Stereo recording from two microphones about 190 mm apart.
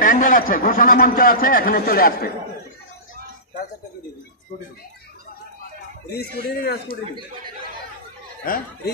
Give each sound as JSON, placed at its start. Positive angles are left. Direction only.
{"t": 0.0, "sound": "a man's voice", "side_deg": 45}
{"t": 6.1, "sound": "a man's voice", "side_deg": 55}
{"t": 8.5, "sound": "a man's voice", "side_deg": 50}